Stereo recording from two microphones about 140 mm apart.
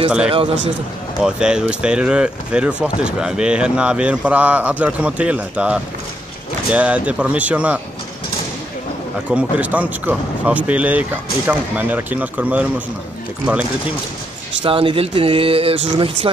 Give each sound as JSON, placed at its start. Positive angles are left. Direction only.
{"t": 1.2, "sound": "speech", "side_deg": -5}
{"t": 9.3, "sound": "speech", "side_deg": -10}
{"t": 14.6, "sound": "speech", "side_deg": -40}